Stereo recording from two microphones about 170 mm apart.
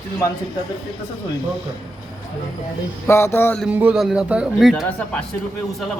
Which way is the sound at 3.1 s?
15° left (ahead or behind).